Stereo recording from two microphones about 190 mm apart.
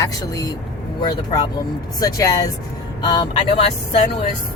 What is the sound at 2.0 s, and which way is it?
Speech, 20° left (ahead or behind).